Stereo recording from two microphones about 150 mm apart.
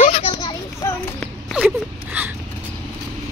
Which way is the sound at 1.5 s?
10° right (ahead or behind).